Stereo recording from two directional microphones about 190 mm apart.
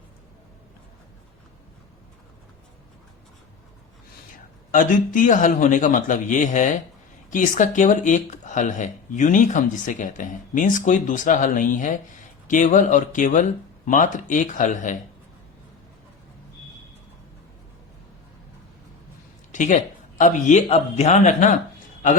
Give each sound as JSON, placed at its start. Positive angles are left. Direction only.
{"t": 4.7, "sound": "speech", "side_deg": 45}
{"t": 19.5, "sound": "speech", "side_deg": 40}